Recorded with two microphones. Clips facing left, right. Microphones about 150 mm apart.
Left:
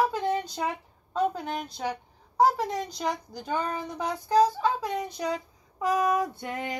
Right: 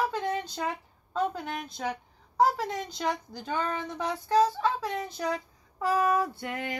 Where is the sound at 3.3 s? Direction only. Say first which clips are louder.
Left 1 dB; 15° left (ahead or behind).